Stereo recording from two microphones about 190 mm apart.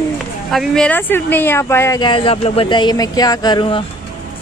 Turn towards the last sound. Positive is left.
turn(degrees=25)  # may be behind; listen again after turning